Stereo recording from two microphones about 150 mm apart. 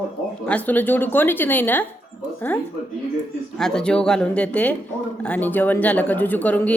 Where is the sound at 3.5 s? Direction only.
5° left (ahead or behind).